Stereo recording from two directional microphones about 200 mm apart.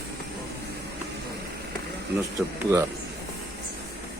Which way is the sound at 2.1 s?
55° right (ahead or behind).